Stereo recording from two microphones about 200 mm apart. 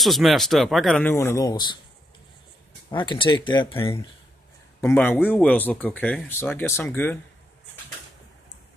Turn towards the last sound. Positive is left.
turn(degrees=10)  # may be behind; listen again after turning